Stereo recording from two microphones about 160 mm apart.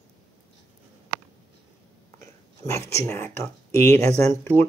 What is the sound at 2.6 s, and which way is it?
Speech, 15° left (ahead or behind).